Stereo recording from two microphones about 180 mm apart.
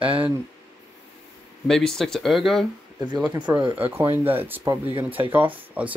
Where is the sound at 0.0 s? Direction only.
30° right (ahead or behind).